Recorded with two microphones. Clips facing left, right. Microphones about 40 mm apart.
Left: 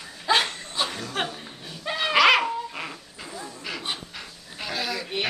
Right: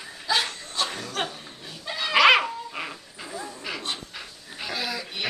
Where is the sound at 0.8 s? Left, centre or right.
Centre.